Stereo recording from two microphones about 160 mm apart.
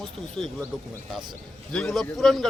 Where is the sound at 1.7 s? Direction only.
Centre (ahead or behind).